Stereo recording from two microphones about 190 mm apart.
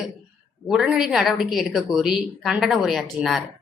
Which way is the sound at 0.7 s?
5° right (ahead or behind).